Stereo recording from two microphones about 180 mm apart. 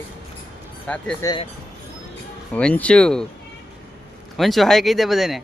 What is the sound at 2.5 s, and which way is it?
Speech, 5° left (ahead or behind).